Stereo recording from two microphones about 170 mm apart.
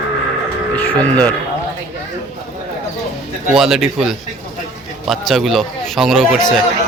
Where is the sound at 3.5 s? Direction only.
Centre (ahead or behind).